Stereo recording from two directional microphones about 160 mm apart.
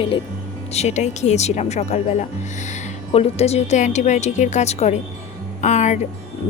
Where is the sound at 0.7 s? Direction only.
45° left (ahead or behind).